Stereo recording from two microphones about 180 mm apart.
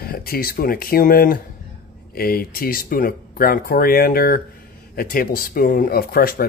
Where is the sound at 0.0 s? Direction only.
55° left (ahead or behind).